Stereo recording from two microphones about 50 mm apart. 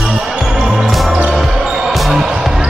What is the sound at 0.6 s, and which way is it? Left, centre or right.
Music, centre.